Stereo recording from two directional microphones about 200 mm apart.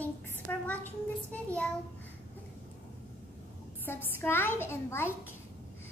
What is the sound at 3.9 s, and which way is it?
A child's voice, 10° left (ahead or behind).